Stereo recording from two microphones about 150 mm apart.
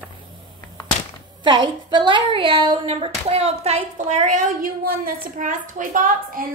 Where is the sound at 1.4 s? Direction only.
30° right (ahead or behind).